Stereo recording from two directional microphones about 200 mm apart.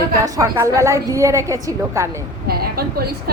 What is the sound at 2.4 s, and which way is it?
Speech, 50° right (ahead or behind).